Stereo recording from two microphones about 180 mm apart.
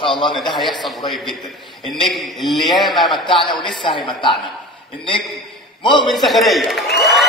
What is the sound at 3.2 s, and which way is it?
A woman's voice, 25° left (ahead or behind).